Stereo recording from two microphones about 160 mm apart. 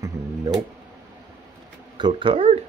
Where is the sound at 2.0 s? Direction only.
30° right (ahead or behind).